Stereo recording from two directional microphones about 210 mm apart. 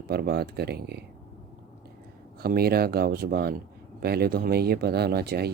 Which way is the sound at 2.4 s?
45° right (ahead or behind).